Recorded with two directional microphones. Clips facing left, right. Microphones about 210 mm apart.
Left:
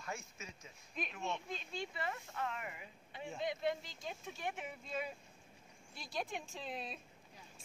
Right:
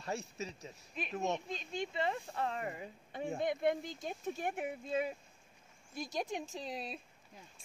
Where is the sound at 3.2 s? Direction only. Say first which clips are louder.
Right 5 dB; 55° right (ahead or behind); by 6.9 s 35° right (ahead or behind).